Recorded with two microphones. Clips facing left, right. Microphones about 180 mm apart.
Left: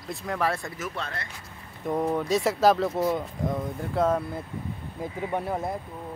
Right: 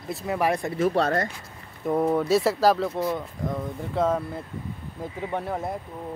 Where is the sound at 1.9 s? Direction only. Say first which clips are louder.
Right 4 dB; 10° right (ahead or behind).